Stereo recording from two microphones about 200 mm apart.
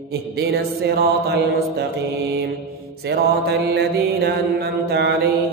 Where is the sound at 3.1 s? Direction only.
55° right (ahead or behind).